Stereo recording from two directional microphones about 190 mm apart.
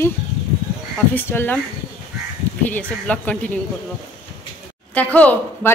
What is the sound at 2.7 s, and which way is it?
Speech, 5° left (ahead or behind).